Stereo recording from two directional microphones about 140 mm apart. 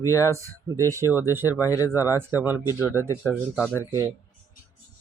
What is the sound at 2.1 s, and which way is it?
Speech, 15° right (ahead or behind).